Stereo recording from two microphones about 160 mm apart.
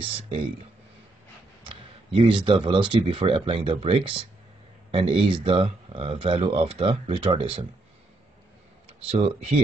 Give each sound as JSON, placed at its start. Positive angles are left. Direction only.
{"t": 0.0, "sound": "speech", "side_deg": -35}
{"t": 1.6, "sound": "speech", "side_deg": -35}
{"t": 8.8, "sound": "speech", "side_deg": -35}